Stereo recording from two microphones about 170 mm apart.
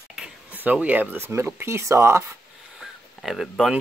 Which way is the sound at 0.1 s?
5° right (ahead or behind).